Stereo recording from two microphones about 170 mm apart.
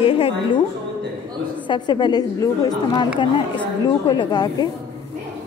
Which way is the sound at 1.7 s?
25° left (ahead or behind).